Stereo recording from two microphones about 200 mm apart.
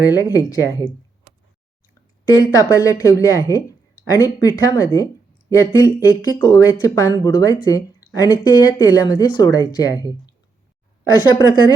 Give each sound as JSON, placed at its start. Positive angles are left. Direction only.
{"t": 0.0, "sound": "speech", "side_deg": 15}
{"t": 2.3, "sound": "speech", "side_deg": 15}